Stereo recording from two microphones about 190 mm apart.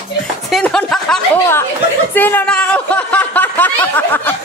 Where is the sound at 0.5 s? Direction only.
5° left (ahead or behind).